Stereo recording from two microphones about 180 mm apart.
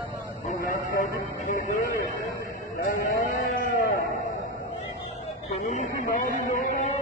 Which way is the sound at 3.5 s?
50° left (ahead or behind).